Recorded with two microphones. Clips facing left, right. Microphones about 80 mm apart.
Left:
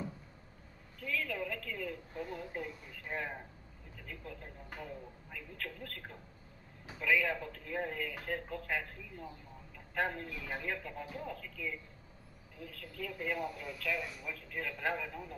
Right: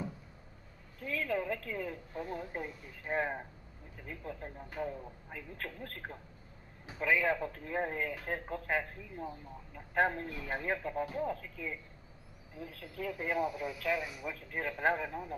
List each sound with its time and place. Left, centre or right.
1.0 s a woman's voice: right
13.9 s speech: centre
14.2 s speech: right